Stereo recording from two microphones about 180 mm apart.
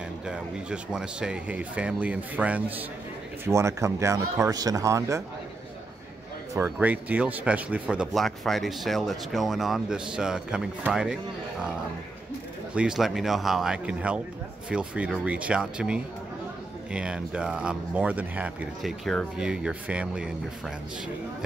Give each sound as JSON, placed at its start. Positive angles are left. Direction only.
{"t": 0.3, "sound": "speech", "side_deg": -5}
{"t": 6.5, "sound": "speech", "side_deg": -10}
{"t": 12.7, "sound": "speech", "side_deg": -5}